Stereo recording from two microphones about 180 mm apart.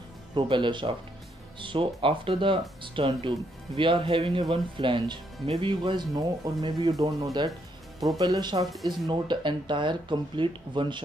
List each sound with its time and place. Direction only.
0.3 s speech: 25° right (ahead or behind)